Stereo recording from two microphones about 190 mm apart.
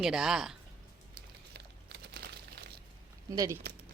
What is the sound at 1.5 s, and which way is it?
Crumpling, 55° right (ahead or behind).